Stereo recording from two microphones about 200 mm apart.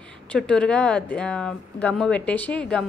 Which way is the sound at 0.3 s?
5° left (ahead or behind).